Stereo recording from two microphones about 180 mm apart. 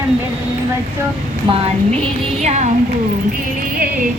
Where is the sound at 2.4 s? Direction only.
40° right (ahead or behind).